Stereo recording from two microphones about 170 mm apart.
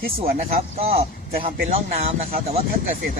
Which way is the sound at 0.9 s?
35° right (ahead or behind).